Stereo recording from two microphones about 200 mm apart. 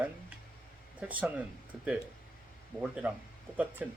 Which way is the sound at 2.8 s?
5° right (ahead or behind).